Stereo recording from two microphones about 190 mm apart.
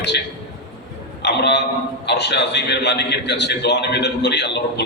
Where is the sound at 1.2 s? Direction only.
60° left (ahead or behind).